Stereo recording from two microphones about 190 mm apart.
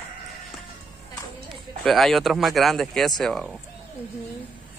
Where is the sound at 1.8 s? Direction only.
Centre (ahead or behind).